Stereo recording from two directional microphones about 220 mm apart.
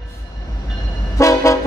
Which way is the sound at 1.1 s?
15° left (ahead or behind).